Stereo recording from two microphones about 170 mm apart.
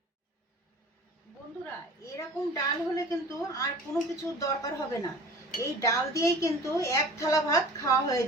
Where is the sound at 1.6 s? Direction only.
15° left (ahead or behind).